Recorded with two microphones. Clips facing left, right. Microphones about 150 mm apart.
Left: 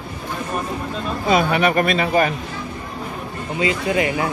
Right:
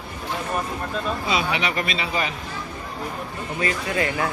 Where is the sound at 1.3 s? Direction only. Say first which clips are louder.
Left 10 dB; 50° left (ahead or behind).